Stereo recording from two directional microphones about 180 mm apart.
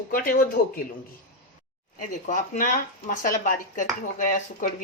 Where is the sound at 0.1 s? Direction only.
50° left (ahead or behind).